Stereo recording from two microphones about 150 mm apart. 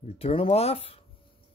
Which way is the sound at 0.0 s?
40° left (ahead or behind).